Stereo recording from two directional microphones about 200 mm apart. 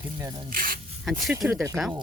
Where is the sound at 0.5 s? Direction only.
45° right (ahead or behind).